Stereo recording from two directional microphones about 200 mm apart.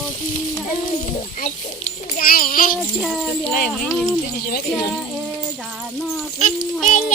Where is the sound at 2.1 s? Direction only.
45° left (ahead or behind).